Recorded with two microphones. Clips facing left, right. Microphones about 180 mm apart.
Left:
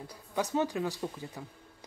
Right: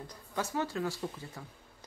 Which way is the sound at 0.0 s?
10° left (ahead or behind).